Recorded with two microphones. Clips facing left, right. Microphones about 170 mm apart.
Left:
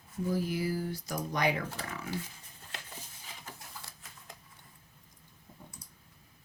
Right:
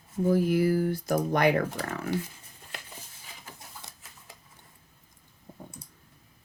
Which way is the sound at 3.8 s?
20° right (ahead or behind).